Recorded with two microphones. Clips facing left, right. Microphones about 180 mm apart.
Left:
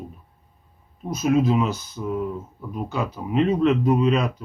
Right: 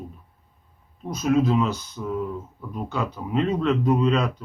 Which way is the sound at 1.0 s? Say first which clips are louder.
Left 1 dB; 5° left (ahead or behind).